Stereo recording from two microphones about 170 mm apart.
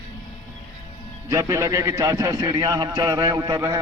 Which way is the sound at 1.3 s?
20° right (ahead or behind).